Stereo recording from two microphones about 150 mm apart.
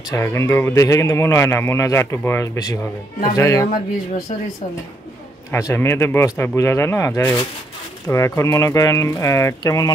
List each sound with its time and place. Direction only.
0.1 s speech: 20° left (ahead or behind)
5.5 s speech: 15° left (ahead or behind)